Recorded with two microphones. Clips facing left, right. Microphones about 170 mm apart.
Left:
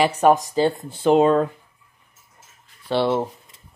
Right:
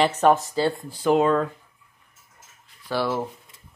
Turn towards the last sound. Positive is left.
turn(degrees=25)  # may be behind; listen again after turning